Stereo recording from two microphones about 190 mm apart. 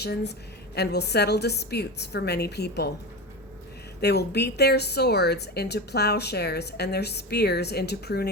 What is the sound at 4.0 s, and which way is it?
A woman's voice, 60° left (ahead or behind).